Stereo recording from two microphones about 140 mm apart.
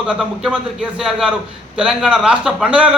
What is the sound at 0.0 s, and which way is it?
A man's voice, 5° right (ahead or behind).